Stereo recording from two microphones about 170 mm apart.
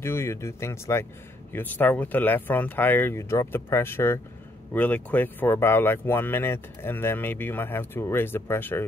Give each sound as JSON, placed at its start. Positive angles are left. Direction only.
{"t": 0.0, "sound": "speech", "side_deg": 15}